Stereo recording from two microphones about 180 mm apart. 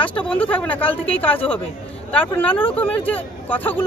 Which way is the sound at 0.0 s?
10° left (ahead or behind).